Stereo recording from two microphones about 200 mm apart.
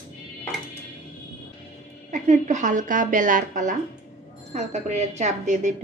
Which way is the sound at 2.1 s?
40° right (ahead or behind).